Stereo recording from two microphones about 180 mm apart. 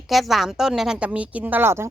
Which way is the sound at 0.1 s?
Centre (ahead or behind).